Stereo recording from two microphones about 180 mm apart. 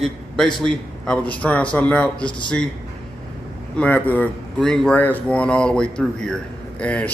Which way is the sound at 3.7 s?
10° left (ahead or behind).